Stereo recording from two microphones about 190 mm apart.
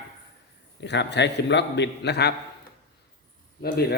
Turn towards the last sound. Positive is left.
turn(degrees=55)  # may be behind; listen again after turning